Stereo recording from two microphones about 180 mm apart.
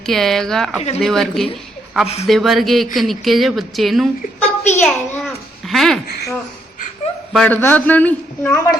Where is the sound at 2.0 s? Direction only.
35° left (ahead or behind).